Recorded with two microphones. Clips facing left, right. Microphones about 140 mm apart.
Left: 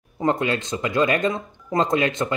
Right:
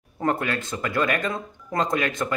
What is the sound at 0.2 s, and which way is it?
Speech, 20° left (ahead or behind).